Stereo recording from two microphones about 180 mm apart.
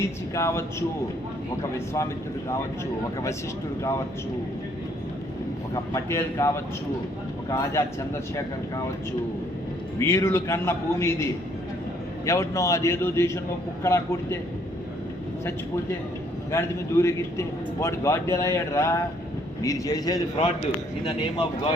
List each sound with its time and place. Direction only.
0.0 s a man's voice: 15° left (ahead or behind)
5.7 s a man's voice: 15° left (ahead or behind)
7.5 s a man's voice: 20° left (ahead or behind)
10.0 s a man's voice: 15° left (ahead or behind)
16.5 s a man's voice: 15° left (ahead or behind)